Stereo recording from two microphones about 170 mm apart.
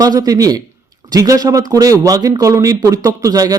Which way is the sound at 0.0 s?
20° right (ahead or behind).